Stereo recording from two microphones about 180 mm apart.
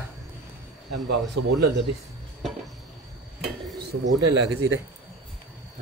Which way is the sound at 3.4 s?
60° right (ahead or behind).